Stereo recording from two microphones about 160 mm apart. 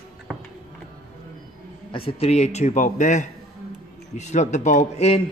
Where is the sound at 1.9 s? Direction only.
35° left (ahead or behind).